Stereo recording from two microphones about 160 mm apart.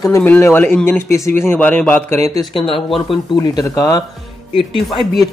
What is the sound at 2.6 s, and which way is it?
Speech, 35° left (ahead or behind).